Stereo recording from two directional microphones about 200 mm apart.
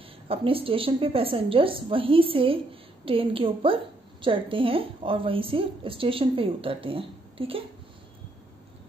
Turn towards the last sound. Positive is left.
turn(degrees=-25)  # may be behind; listen again after turning